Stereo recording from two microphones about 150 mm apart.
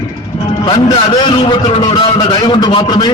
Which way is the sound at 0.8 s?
35° left (ahead or behind).